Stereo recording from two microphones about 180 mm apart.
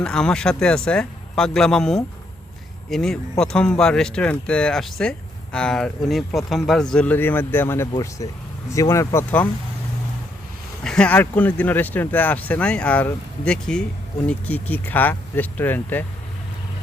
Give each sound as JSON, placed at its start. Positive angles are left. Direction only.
{"t": 0.0, "sound": "speech", "side_deg": 5}
{"t": 10.8, "sound": "speech", "side_deg": 5}